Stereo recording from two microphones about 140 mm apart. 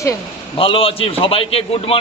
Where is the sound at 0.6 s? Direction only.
40° left (ahead or behind).